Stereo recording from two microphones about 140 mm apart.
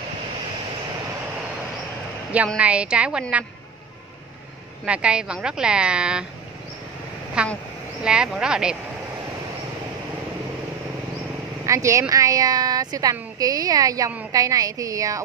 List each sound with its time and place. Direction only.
2.3 s speech: 10° right (ahead or behind)
4.8 s speech: 10° right (ahead or behind)
7.4 s speech: 5° right (ahead or behind)
11.6 s speech: 20° right (ahead or behind)